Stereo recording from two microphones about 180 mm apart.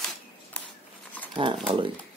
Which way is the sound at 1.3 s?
25° right (ahead or behind).